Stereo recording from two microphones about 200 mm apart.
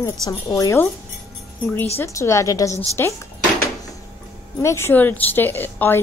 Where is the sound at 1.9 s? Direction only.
15° left (ahead or behind).